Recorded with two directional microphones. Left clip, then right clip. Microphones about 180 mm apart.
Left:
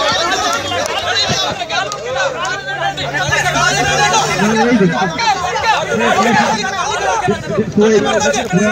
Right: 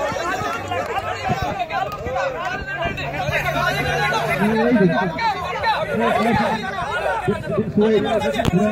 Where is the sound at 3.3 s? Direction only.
15° left (ahead or behind).